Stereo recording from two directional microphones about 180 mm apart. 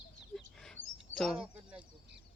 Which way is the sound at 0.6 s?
5° left (ahead or behind).